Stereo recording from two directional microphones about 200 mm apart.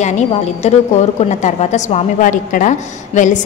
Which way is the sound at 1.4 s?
35° left (ahead or behind).